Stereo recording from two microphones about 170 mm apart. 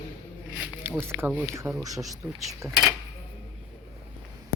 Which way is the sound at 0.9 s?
10° right (ahead or behind).